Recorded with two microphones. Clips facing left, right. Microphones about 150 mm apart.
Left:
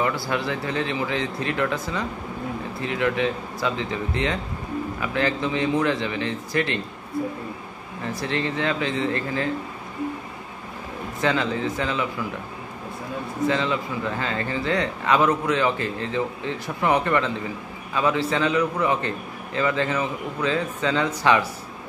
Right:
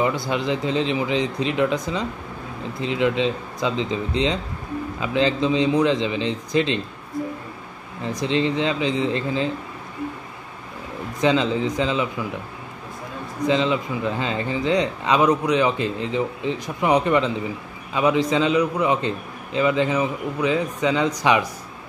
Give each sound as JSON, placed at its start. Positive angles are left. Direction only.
{"t": 0.0, "sound": "a man's voice", "side_deg": -20}
{"t": 8.0, "sound": "a man's voice", "side_deg": -20}
{"t": 11.1, "sound": "a man's voice", "side_deg": -20}
{"t": 13.5, "sound": "speech", "side_deg": -20}